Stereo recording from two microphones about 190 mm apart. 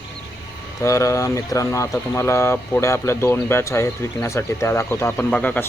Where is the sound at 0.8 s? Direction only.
15° left (ahead or behind).